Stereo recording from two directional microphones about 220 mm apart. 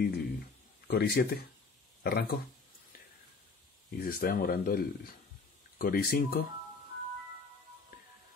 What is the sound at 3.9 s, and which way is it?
Speech, 40° left (ahead or behind).